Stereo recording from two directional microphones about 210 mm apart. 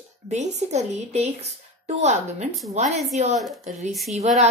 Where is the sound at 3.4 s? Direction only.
Centre (ahead or behind).